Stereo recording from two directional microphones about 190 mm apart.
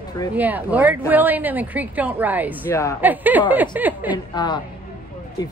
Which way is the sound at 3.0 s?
10° right (ahead or behind).